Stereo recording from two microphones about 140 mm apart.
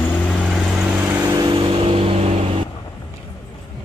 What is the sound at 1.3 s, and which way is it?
Vehicle, 35° right (ahead or behind).